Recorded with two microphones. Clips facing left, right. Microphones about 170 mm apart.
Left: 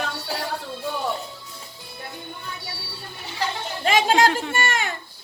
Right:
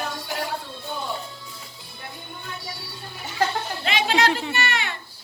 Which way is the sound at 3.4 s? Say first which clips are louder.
Right 4 dB; 50° right (ahead or behind).